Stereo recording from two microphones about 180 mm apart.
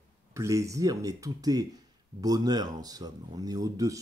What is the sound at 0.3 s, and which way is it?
Speech, 15° right (ahead or behind).